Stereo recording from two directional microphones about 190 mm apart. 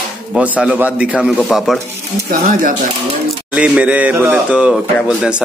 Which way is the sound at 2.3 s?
45° right (ahead or behind).